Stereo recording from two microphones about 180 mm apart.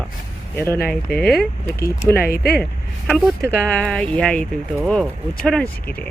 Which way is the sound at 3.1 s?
Centre (ahead or behind).